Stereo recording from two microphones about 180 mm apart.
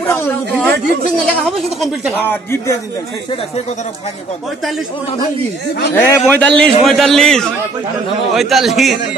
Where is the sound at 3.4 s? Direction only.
35° left (ahead or behind).